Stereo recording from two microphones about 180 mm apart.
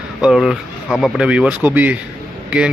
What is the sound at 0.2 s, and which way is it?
A man's voice, centre (ahead or behind).